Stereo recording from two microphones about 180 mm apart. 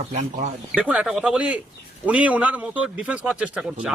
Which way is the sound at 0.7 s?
5° right (ahead or behind).